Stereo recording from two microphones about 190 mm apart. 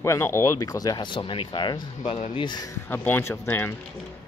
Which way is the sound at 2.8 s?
10° left (ahead or behind).